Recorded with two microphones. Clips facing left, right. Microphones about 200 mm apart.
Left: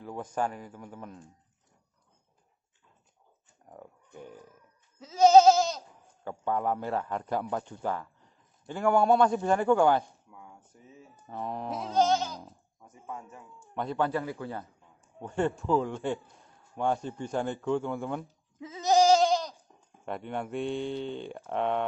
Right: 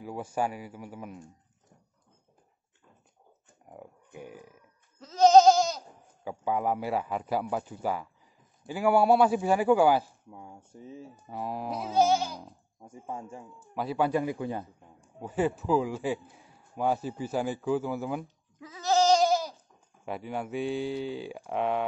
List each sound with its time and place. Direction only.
0.0 s sheep: 10° right (ahead or behind)
3.6 s speech: 10° right (ahead or behind)
4.9 s speech: 5° left (ahead or behind)
10.3 s speech: 30° right (ahead or behind)
11.2 s sheep: 5° right (ahead or behind)
12.8 s speech: 30° right (ahead or behind)
13.7 s sheep: 5° right (ahead or behind)
15.1 s a man's voice: 5° right (ahead or behind)
18.6 s goat: 20° left (ahead or behind)
19.2 s goat: 5° right (ahead or behind)
20.1 s a man's voice: 5° right (ahead or behind)